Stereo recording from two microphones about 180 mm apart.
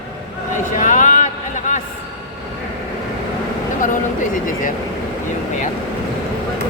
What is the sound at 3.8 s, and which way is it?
Speech, 45° left (ahead or behind).